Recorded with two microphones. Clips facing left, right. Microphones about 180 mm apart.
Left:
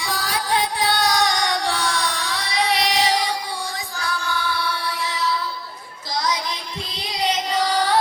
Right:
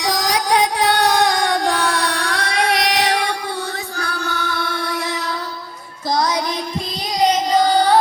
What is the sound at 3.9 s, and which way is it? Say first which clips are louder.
Music: right 2 dB; 65° right (ahead or behind).